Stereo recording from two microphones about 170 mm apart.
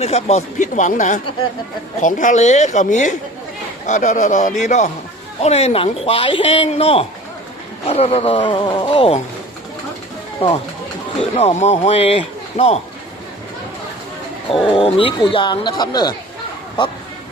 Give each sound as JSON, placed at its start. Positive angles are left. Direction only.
{"t": 0.0, "sound": "a man's voice", "side_deg": 40}
{"t": 10.4, "sound": "a man's voice", "side_deg": 30}
{"t": 14.7, "sound": "a man's voice", "side_deg": 30}